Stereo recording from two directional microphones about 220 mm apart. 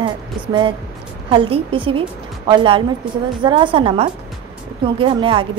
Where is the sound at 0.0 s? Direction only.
20° right (ahead or behind).